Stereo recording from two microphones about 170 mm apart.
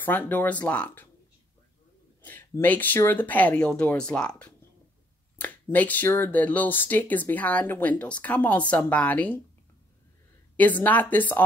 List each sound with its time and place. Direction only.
0.0 s speech: 10° left (ahead or behind)
2.2 s speech: 10° left (ahead or behind)
10.5 s speech: 10° left (ahead or behind)